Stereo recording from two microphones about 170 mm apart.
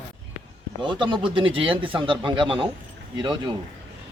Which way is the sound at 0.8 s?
30° right (ahead or behind).